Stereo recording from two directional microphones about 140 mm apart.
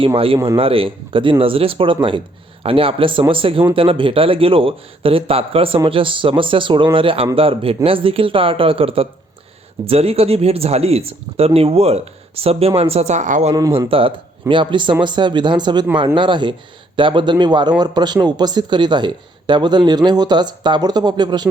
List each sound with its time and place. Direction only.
0.4 s a man's voice: 40° right (ahead or behind); by 13.5 s 60° right (ahead or behind)
13.5 s speech: 25° right (ahead or behind)
13.7 s a man's voice: 40° right (ahead or behind)